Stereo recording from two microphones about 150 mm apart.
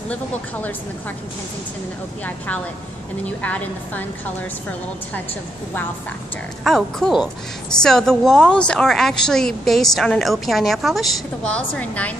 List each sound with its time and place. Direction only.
0.1 s a woman's voice: 10° left (ahead or behind)
2.2 s a woman's voice: 10° left (ahead or behind)
6.6 s a woman's voice: centre (ahead or behind)